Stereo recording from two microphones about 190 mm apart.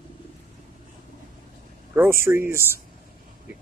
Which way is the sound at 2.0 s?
15° right (ahead or behind).